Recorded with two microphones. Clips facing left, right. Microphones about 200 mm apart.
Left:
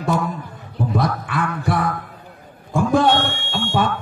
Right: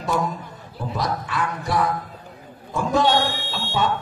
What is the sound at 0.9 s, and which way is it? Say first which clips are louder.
Music: left 3 dB; 55° left (ahead or behind).